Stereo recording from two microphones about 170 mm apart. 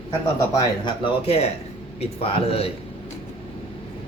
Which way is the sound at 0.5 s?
30° left (ahead or behind).